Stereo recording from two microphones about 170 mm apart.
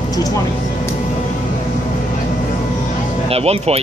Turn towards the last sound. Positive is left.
turn(degrees=-35)  # may be behind; listen again after turning